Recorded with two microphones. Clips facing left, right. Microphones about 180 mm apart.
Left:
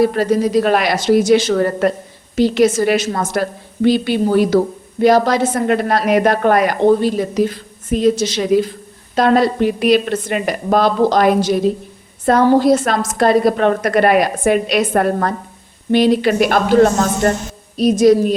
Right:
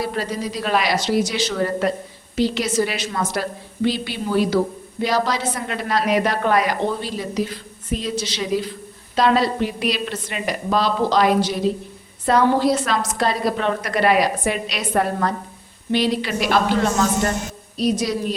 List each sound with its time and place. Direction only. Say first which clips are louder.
0.0 s a woman's voice: left 11 dB; 50° left (ahead or behind)